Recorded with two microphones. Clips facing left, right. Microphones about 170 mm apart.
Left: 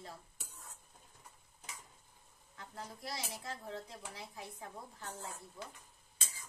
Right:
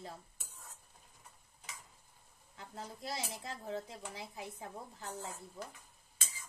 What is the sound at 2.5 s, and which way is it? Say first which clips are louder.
Speech: right 1 dB; 25° right (ahead or behind).